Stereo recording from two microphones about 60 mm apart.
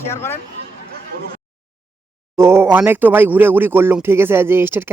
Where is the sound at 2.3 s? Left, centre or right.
Right.